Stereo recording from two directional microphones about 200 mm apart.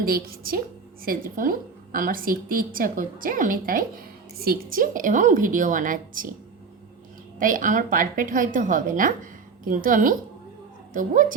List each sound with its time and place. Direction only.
0.0 s a woman's voice: 50° right (ahead or behind)
7.3 s a woman's voice: 40° right (ahead or behind)